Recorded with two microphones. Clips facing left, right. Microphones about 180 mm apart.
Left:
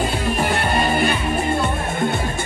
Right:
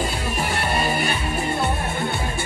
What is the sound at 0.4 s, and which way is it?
Music, 50° left (ahead or behind).